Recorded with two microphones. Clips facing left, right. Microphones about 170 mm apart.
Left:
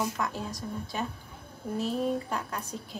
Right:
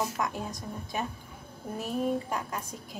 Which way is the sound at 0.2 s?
15° right (ahead or behind).